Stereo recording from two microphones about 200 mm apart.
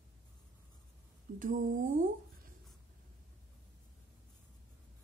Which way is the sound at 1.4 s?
40° right (ahead or behind).